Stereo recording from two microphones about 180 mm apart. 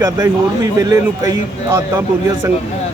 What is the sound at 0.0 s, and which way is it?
Speech, 20° right (ahead or behind).